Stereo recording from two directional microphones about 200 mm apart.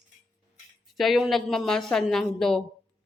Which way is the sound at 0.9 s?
Centre (ahead or behind).